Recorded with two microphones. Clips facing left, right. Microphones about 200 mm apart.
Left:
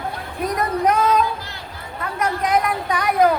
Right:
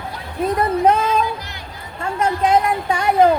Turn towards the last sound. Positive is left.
turn(degrees=-25)  # may be behind; listen again after turning